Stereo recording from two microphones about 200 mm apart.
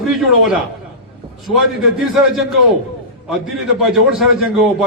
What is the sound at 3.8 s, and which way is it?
A man's voice, centre (ahead or behind).